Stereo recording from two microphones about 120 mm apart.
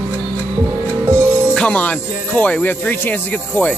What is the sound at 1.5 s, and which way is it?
Speech, 10° left (ahead or behind).